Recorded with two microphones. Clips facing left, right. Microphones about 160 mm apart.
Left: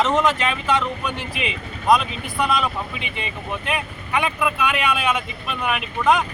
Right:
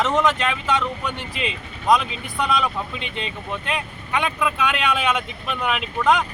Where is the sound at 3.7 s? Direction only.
5° left (ahead or behind).